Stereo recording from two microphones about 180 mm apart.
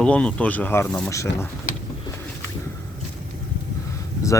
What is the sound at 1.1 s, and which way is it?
Speech, 15° left (ahead or behind).